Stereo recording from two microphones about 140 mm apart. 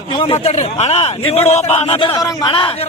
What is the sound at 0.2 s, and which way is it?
A man's voice, 45° left (ahead or behind).